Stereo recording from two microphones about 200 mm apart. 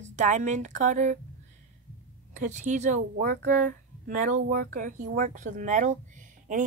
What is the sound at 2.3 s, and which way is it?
A woman's voice, 35° right (ahead or behind).